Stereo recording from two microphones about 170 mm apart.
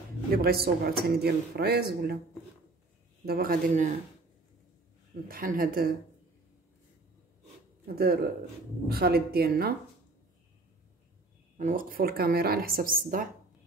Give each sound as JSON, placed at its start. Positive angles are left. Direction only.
{"t": 0.3, "sound": "speech", "side_deg": -65}
{"t": 3.3, "sound": "a man's voice", "side_deg": -60}
{"t": 5.3, "sound": "speech", "side_deg": -60}
{"t": 7.8, "sound": "speech", "side_deg": -60}
{"t": 11.5, "sound": "speech", "side_deg": -50}